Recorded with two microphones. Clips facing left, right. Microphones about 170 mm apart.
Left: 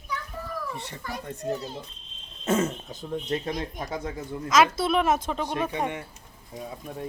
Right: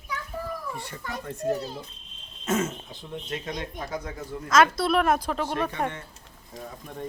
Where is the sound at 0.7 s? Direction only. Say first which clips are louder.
Even; 20° left (ahead or behind).